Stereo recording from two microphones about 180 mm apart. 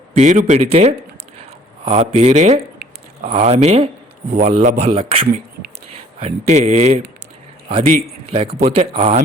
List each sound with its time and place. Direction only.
0.1 s a man's voice: 40° right (ahead or behind)
8.3 s a man's voice: 30° right (ahead or behind)